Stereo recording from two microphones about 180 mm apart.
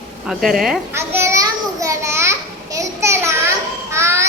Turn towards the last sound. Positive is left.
turn(degrees=-15)  # may be behind; listen again after turning